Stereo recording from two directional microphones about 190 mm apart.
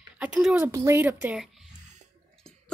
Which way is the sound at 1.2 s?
Centre (ahead or behind).